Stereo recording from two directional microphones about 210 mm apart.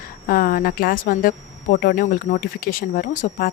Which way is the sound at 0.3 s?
45° left (ahead or behind).